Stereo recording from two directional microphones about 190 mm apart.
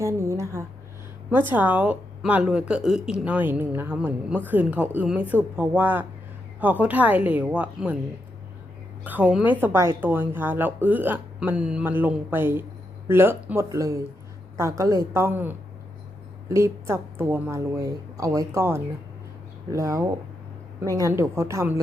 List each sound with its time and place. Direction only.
0.0 s a sound: 15° right (ahead or behind)
1.3 s a woman's voice: 10° right (ahead or behind)
9.0 s a woman's voice: 10° right (ahead or behind)